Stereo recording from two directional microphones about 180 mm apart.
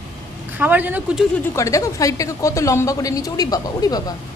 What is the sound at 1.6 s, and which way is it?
A woman's voice, 20° left (ahead or behind).